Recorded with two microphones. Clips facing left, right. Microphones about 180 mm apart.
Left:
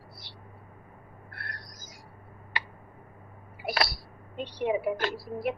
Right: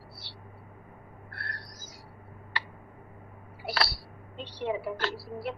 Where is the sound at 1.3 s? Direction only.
15° left (ahead or behind).